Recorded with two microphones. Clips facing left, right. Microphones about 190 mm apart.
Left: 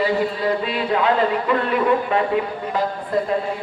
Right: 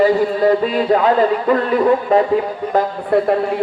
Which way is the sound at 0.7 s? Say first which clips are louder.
Right 5 dB; 40° right (ahead or behind).